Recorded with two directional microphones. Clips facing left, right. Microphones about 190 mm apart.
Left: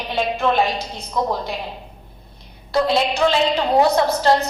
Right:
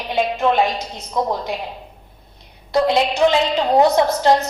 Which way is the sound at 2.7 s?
20° right (ahead or behind).